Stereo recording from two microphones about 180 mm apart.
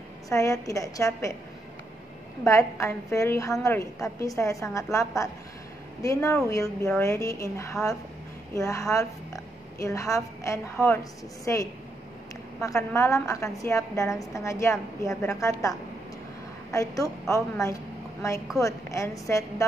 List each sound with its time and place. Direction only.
0.3 s a woman's voice: 15° left (ahead or behind)
2.4 s a woman's voice: 15° left (ahead or behind)